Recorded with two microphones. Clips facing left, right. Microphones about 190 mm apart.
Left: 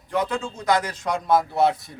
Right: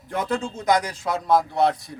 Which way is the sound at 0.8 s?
5° right (ahead or behind).